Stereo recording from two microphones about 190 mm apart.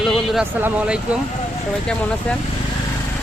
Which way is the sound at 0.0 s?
Centre (ahead or behind).